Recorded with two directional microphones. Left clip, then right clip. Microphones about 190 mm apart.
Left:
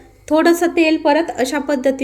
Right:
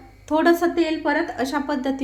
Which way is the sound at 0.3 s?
15° left (ahead or behind).